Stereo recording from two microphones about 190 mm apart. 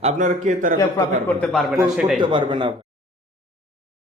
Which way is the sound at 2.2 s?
25° right (ahead or behind).